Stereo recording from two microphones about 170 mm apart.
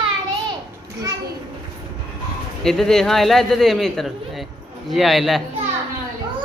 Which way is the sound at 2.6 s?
5° left (ahead or behind).